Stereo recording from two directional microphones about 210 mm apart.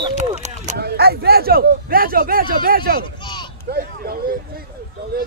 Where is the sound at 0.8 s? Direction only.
50° right (ahead or behind).